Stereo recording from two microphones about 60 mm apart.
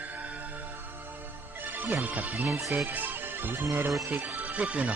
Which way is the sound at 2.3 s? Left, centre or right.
Right.